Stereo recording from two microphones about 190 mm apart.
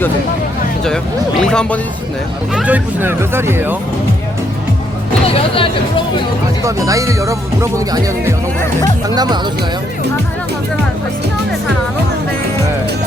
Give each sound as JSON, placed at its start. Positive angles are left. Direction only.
{"t": 1.4, "sound": "speech", "side_deg": 5}
{"t": 2.6, "sound": "speech", "side_deg": -10}
{"t": 5.2, "sound": "speech", "side_deg": 30}
{"t": 6.6, "sound": "speech", "side_deg": -15}